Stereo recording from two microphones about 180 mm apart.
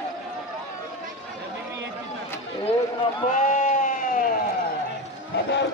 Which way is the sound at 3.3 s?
45° left (ahead or behind).